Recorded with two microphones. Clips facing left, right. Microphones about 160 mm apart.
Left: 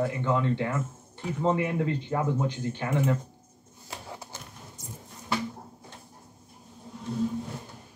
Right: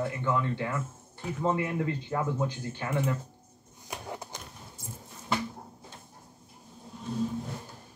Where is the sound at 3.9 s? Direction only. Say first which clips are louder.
Right 2 dB; 20° right (ahead or behind).